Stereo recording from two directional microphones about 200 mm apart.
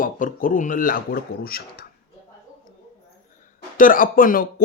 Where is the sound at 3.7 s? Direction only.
45° left (ahead or behind).